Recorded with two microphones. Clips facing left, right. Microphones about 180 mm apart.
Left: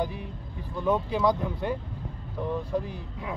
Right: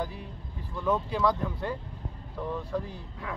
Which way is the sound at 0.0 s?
20° left (ahead or behind).